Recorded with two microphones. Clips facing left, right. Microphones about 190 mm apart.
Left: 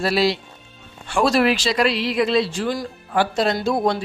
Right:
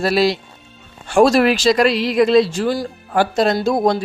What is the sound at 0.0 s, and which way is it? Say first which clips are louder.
Speech: right 3 dB; 45° right (ahead or behind).